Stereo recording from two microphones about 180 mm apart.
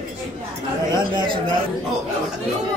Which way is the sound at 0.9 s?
25° right (ahead or behind).